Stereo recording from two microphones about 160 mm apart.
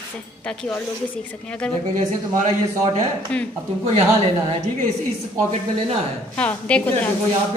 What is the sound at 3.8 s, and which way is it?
Speech, 35° right (ahead or behind).